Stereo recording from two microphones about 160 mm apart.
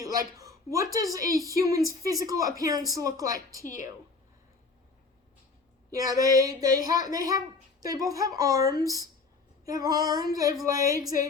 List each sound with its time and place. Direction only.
0.0 s a woman's voice: 20° right (ahead or behind)
5.9 s speech: 20° right (ahead or behind)